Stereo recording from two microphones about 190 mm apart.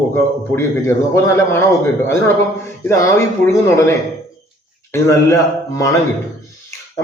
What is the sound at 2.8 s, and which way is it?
A man's voice, 15° left (ahead or behind).